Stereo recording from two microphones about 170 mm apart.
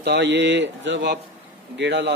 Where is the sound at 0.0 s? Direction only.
85° right.